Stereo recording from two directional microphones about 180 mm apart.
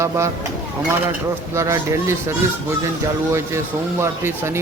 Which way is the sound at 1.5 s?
15° right (ahead or behind).